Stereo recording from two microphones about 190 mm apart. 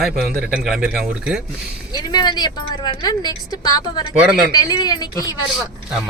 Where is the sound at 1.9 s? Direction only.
20° left (ahead or behind).